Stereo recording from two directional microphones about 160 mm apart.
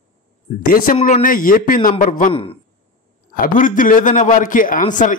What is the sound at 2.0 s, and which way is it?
A man's voice, 50° left (ahead or behind).